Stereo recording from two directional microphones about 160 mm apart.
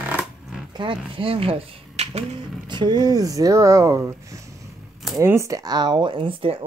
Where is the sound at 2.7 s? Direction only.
25° right (ahead or behind).